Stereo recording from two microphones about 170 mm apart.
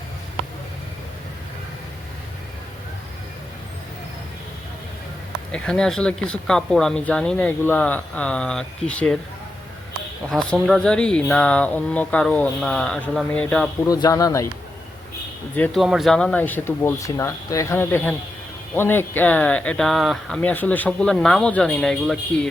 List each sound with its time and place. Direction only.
5.5 s speech: 5° left (ahead or behind)
10.2 s speech: 5° left (ahead or behind)
13.8 s speech: 20° left (ahead or behind)
15.5 s speech: 10° left (ahead or behind)